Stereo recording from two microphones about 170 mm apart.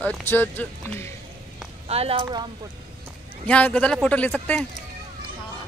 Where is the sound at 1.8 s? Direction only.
35° right (ahead or behind).